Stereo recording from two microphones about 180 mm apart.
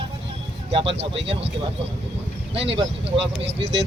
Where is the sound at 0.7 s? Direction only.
30° right (ahead or behind).